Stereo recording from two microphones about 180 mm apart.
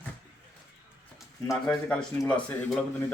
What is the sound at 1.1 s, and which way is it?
Speech, 5° left (ahead or behind).